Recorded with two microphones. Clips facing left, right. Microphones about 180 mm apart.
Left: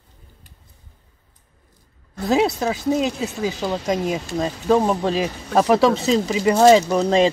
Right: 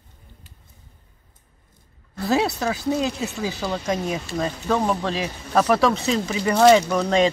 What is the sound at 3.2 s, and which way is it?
Speech, 20° left (ahead or behind).